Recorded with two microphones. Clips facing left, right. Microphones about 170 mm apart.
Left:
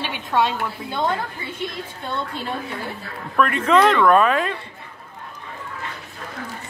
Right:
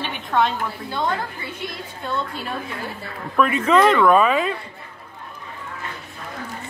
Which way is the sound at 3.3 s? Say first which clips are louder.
Even; 5° right (ahead or behind).